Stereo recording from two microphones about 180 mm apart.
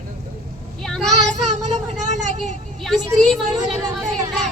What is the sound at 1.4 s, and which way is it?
Vehicle, 40° right (ahead or behind).